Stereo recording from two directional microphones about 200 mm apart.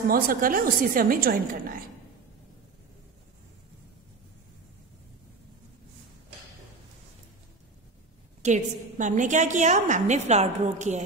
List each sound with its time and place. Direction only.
0.1 s a woman's voice: 45° right (ahead or behind)
8.4 s a woman's voice: 35° right (ahead or behind)